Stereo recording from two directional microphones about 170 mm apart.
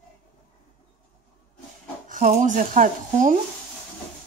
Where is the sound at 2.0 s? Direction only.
50° right (ahead or behind).